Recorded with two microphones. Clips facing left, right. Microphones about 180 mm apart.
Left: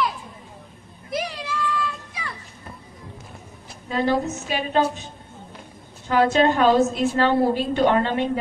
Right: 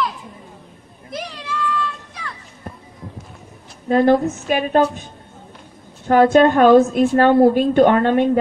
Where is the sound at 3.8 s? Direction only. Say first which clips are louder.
Right 8 dB; 55° right (ahead or behind).